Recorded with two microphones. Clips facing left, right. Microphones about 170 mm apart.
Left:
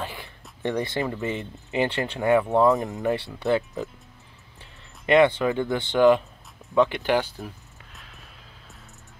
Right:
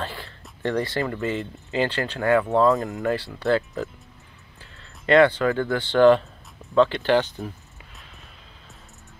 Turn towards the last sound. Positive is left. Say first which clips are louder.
# right 2 dB
turn(degrees=15)  # may be behind; listen again after turning